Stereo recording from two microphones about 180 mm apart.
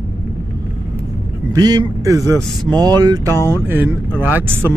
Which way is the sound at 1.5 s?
20° right (ahead or behind).